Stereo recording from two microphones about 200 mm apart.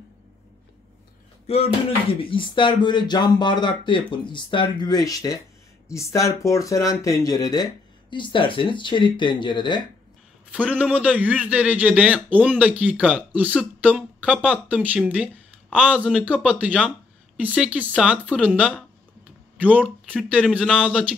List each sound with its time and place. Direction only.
1.5 s speech: 30° left (ahead or behind)
10.5 s speech: 5° right (ahead or behind)
19.5 s a sound: 5° right (ahead or behind)
20.1 s speech: 5° right (ahead or behind)